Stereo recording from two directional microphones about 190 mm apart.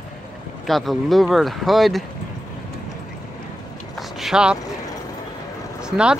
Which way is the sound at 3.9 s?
Centre (ahead or behind).